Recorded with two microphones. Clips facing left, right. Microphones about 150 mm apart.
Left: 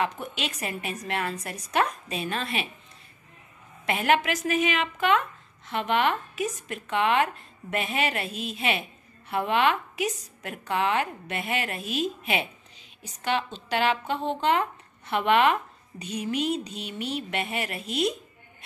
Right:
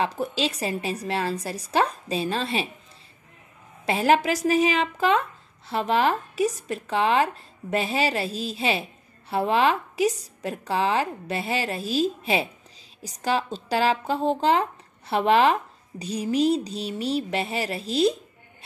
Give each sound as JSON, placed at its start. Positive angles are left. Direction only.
{"t": 0.0, "sound": "speech", "side_deg": -35}
{"t": 3.8, "sound": "speech", "side_deg": -35}